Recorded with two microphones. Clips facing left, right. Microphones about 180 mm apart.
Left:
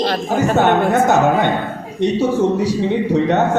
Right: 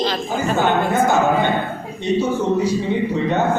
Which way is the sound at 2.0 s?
80° left.